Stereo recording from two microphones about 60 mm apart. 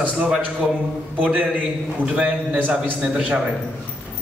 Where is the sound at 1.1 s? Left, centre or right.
Right.